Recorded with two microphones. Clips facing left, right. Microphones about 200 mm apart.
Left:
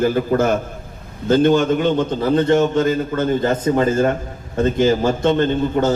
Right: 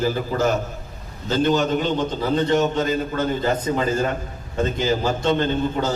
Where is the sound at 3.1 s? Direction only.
50° left (ahead or behind).